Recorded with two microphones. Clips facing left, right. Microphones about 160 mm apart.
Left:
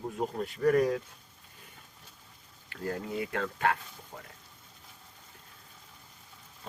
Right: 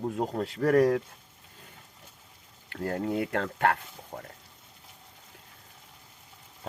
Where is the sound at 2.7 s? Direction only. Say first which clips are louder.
Right 5 dB; 60° right (ahead or behind).